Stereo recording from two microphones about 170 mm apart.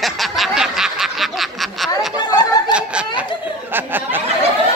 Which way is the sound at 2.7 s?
5° right (ahead or behind).